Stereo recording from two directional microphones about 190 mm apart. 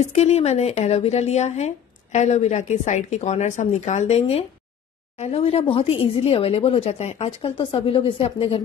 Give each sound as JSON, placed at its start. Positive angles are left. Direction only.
{"t": 0.0, "sound": "speech", "side_deg": 35}